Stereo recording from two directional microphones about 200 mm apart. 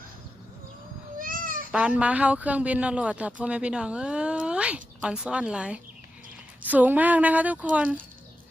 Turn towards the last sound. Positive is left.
turn(degrees=-5)  # may be behind; listen again after turning